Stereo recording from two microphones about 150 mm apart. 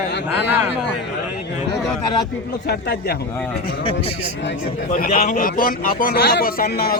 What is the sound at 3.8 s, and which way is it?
Speech, 40° left (ahead or behind).